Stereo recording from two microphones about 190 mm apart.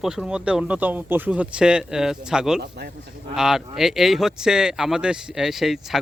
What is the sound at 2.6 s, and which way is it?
Speech, 60° right (ahead or behind).